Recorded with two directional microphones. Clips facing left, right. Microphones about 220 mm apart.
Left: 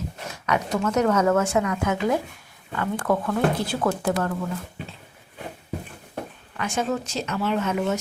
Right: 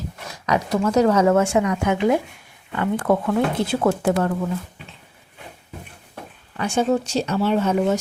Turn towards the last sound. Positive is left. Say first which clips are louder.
# right 5 dB
turn(degrees=-30)  # may be behind; listen again after turning